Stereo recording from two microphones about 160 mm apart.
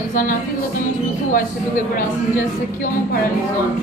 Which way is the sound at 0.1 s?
60° left (ahead or behind).